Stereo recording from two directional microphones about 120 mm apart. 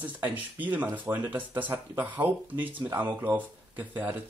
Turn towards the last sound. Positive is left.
turn(degrees=-15)  # may be behind; listen again after turning